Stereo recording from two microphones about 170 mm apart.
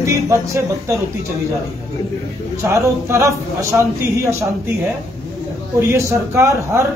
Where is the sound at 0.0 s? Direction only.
20° right (ahead or behind).